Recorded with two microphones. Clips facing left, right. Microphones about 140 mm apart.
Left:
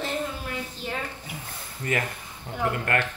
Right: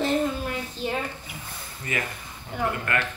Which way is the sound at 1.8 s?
45° left (ahead or behind).